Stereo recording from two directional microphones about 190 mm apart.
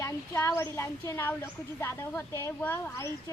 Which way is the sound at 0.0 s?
15° left (ahead or behind).